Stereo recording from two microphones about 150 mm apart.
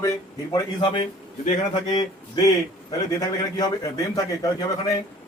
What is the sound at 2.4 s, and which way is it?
A man's voice, 25° left (ahead or behind).